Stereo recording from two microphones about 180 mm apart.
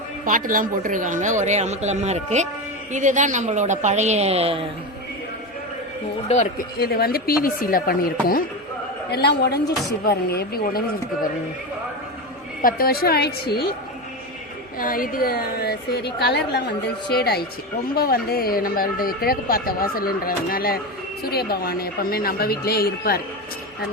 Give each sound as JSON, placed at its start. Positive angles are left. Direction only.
{"t": 0.3, "sound": "speech", "side_deg": -50}
{"t": 6.2, "sound": "speech", "side_deg": 40}
{"t": 6.7, "sound": "speech", "side_deg": 60}
{"t": 9.0, "sound": "speech", "side_deg": 65}
{"t": 12.6, "sound": "speech", "side_deg": 55}
{"t": 14.8, "sound": "speech", "side_deg": 50}
{"t": 17.9, "sound": "speech", "side_deg": 55}